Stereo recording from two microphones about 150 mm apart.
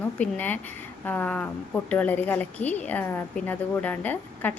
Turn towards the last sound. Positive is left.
turn(degrees=10)  # may be behind; listen again after turning